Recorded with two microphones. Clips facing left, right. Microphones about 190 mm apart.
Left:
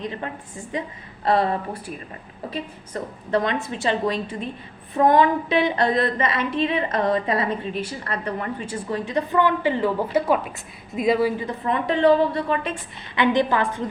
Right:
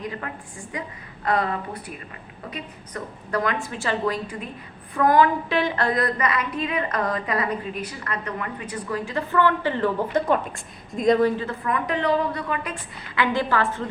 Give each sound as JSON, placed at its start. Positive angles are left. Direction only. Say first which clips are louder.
{"t": 0.0, "sound": "a woman's voice", "louder": "left 2 dB", "side_deg": 25}
{"t": 13.1, "sound": "a woman's voice", "louder": "left 3 dB", "side_deg": 20}